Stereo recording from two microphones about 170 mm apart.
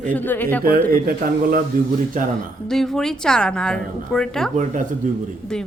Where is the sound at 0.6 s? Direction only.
60° right (ahead or behind).